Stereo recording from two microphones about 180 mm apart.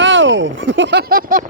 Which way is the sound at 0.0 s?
90° right.